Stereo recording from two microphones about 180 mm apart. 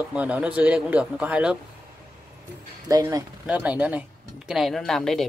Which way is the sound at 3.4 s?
10° right (ahead or behind).